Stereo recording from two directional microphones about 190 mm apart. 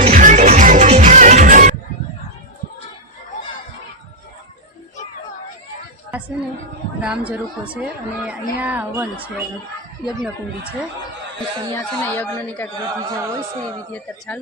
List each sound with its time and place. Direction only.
0.1 s music: 45° right (ahead or behind)
6.1 s a woman's voice: 10° right (ahead or behind)
11.7 s a man's voice: 10° left (ahead or behind)